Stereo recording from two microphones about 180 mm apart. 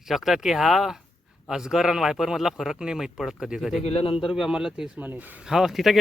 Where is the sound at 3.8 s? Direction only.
30° left (ahead or behind).